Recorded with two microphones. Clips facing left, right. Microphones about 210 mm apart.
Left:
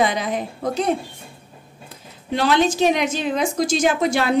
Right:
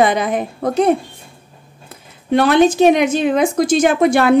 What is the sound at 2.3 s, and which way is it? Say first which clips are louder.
A woman's voice: right 7 dB; 55° right (ahead or behind).